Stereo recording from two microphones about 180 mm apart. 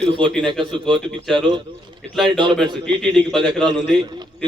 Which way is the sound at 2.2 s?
25° right (ahead or behind).